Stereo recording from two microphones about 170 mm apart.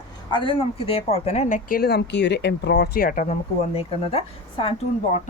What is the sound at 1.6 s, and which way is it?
Speech, 60° left (ahead or behind).